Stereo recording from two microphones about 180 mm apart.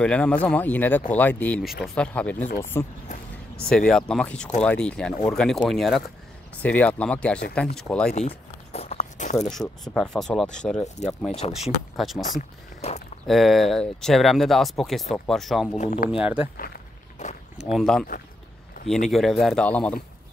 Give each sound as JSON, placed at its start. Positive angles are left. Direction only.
{"t": 0.0, "sound": "speech", "side_deg": 5}
{"t": 8.3, "sound": "a sound", "side_deg": 35}
{"t": 9.4, "sound": "speech", "side_deg": 0}
{"t": 11.0, "sound": "speech", "side_deg": 40}
{"t": 12.3, "sound": "speech", "side_deg": 40}
{"t": 13.3, "sound": "speech", "side_deg": 0}
{"t": 15.8, "sound": "speech", "side_deg": 40}
{"t": 16.2, "sound": "speech", "side_deg": -5}
{"t": 16.5, "sound": "a sound", "side_deg": 55}
{"t": 17.6, "sound": "speech", "side_deg": 0}